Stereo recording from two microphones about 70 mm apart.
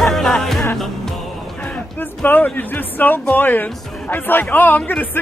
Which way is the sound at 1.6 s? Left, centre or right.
Centre.